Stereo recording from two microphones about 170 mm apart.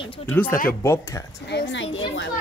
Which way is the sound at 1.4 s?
90° left.